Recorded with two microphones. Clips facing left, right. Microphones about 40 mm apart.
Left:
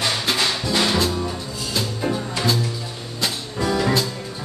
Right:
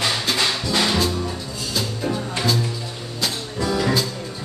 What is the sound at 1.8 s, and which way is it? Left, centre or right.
Music, centre.